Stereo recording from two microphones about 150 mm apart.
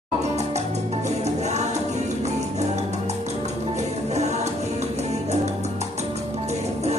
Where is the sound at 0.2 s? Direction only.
50° right (ahead or behind).